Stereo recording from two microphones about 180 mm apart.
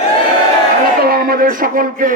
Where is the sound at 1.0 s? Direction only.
55° right (ahead or behind).